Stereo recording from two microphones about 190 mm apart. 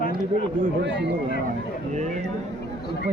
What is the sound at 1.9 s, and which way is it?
Speech, 40° right (ahead or behind).